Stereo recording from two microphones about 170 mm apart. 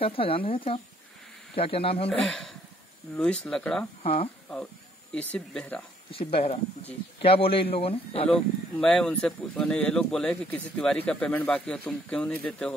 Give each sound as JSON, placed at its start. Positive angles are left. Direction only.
{"t": 0.0, "sound": "a man's voice", "side_deg": 35}
{"t": 2.0, "sound": "speech", "side_deg": 5}
{"t": 4.0, "sound": "speech", "side_deg": 35}
{"t": 5.1, "sound": "speech", "side_deg": 5}
{"t": 6.1, "sound": "a man's voice", "side_deg": 35}
{"t": 8.3, "sound": "speech", "side_deg": 5}